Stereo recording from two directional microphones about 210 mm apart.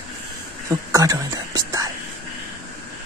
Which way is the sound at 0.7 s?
15° right (ahead or behind).